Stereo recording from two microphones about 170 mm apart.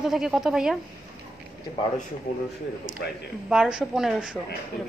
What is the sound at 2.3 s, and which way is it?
Speech, 60° left (ahead or behind).